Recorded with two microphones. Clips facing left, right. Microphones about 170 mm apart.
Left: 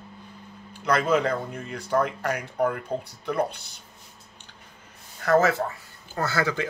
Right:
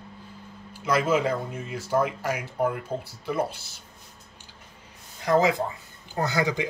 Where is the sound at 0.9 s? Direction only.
5° right (ahead or behind).